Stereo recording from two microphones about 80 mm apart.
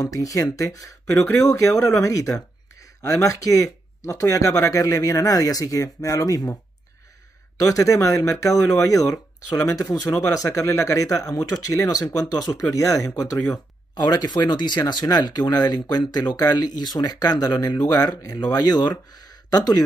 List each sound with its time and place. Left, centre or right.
0.0 s speech: left
13.9 s speech: left